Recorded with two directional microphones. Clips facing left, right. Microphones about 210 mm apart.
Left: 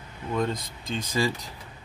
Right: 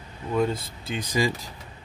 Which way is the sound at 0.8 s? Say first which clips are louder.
Right 1 dB; 15° right (ahead or behind).